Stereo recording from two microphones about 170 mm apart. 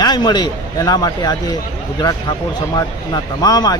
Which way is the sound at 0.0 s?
25° left (ahead or behind).